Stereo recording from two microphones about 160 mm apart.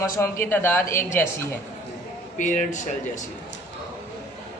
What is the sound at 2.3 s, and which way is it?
Speech, 50° left (ahead or behind).